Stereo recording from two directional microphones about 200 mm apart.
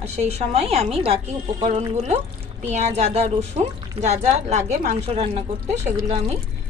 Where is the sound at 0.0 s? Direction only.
30° right (ahead or behind).